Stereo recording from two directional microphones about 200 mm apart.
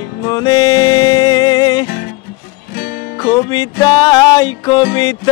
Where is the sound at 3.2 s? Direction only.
20° left (ahead or behind).